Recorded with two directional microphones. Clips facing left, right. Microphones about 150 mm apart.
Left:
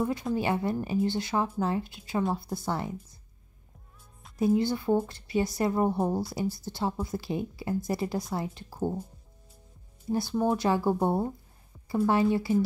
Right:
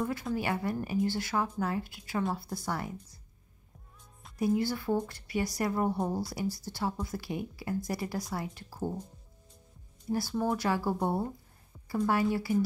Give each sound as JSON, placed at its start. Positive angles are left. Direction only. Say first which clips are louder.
{"t": 0.0, "sound": "a woman's voice", "louder": "left 4 dB", "side_deg": 20}
{"t": 4.4, "sound": "a woman's voice", "louder": "left 4 dB", "side_deg": 25}
{"t": 10.3, "sound": "a woman's voice", "louder": "left 5 dB", "side_deg": 20}